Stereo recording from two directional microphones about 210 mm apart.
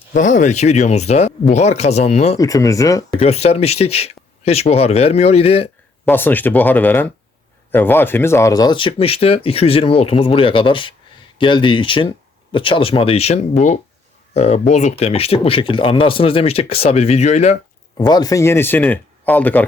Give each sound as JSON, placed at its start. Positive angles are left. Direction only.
{"t": 0.1, "sound": "speech", "side_deg": 35}
{"t": 2.4, "sound": "speech", "side_deg": 15}
{"t": 3.2, "sound": "speech", "side_deg": 30}
{"t": 6.1, "sound": "speech", "side_deg": 10}
{"t": 17.9, "sound": "speech", "side_deg": 20}